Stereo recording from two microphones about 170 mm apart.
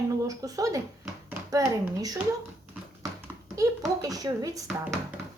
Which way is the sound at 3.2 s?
20° right (ahead or behind).